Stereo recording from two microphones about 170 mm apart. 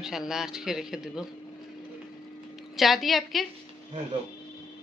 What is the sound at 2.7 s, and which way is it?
Speech, centre (ahead or behind).